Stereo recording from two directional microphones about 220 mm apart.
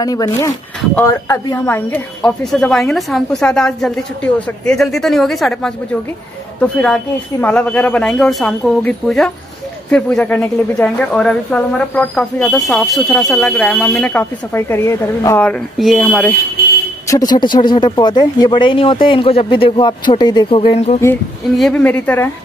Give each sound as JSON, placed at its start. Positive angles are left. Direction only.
{"t": 0.0, "sound": "a woman's voice", "side_deg": 15}
{"t": 17.1, "sound": "speech", "side_deg": 20}
{"t": 21.5, "sound": "a woman's voice", "side_deg": 5}